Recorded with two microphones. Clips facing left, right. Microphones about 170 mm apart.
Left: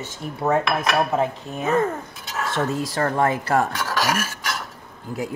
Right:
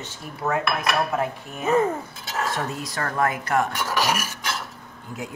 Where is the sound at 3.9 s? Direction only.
15° right (ahead or behind).